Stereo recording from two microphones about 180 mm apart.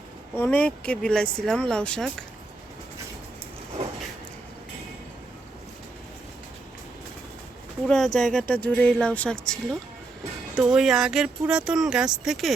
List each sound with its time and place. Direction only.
0.3 s speech: 10° left (ahead or behind)
7.9 s speech: centre (ahead or behind)